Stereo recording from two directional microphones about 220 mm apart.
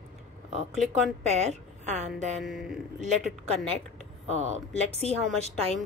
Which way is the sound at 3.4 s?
25° right (ahead or behind).